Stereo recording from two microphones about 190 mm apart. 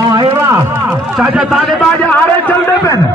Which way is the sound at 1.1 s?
5° right (ahead or behind).